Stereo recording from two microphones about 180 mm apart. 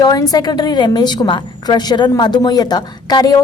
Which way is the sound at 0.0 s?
20° left (ahead or behind).